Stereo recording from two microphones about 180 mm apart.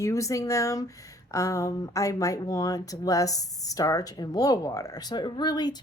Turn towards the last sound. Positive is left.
turn(degrees=25)  # may be behind; listen again after turning